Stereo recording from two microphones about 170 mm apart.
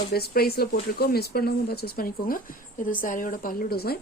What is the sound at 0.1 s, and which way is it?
Speech, 65° left (ahead or behind).